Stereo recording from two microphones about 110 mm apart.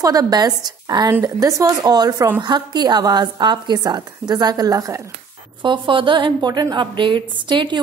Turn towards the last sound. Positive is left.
turn(degrees=-45)  # may be behind; listen again after turning